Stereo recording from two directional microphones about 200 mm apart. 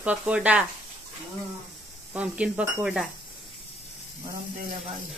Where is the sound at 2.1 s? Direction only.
5° right (ahead or behind).